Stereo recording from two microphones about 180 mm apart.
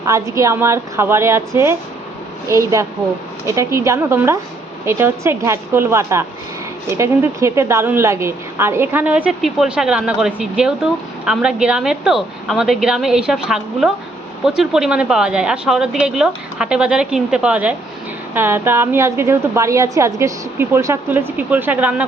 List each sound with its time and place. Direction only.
0.0 s a woman's voice: 15° right (ahead or behind)